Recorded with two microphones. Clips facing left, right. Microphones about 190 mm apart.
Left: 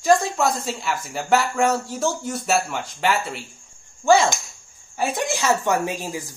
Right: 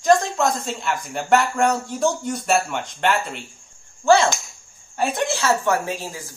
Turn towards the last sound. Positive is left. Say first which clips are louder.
# left 2 dB
turn(degrees=15)  # may be behind; listen again after turning